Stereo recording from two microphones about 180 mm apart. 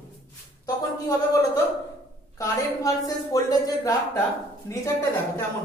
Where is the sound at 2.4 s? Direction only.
20° left (ahead or behind).